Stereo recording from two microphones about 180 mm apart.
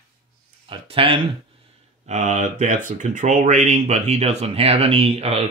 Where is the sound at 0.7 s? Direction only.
30° right (ahead or behind).